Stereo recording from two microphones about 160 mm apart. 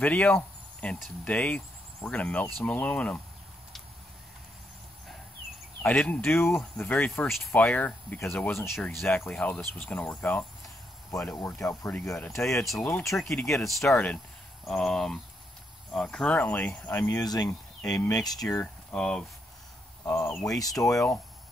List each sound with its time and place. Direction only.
0.0 s speech: 10° left (ahead or behind)
5.8 s speech: 10° left (ahead or behind)
8.7 s speech: 5° left (ahead or behind)
11.5 s speech: 15° left (ahead or behind)
12.6 s speech: 5° left (ahead or behind)
17.2 s speech: 25° left (ahead or behind)
18.6 s speech: 5° left (ahead or behind)